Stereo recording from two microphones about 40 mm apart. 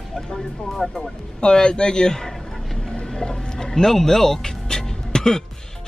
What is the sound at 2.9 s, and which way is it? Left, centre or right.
Music, centre.